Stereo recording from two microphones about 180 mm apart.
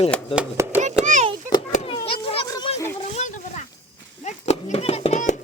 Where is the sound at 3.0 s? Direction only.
40° left (ahead or behind).